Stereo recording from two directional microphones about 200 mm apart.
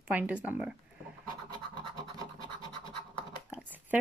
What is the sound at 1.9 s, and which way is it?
Scratch, 20° right (ahead or behind).